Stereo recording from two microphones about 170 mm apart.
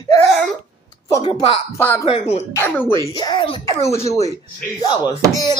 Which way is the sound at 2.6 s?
15° left (ahead or behind).